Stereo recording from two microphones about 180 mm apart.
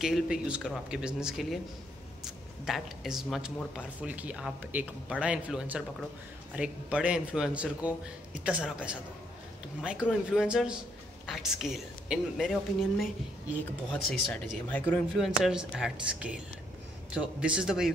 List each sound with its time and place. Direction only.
0.0 s speech: 5° right (ahead or behind)
2.6 s speech: centre (ahead or behind)
14.0 s speech: 5° left (ahead or behind)